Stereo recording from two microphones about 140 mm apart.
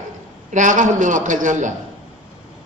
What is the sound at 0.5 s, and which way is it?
A man's voice, 65° right (ahead or behind).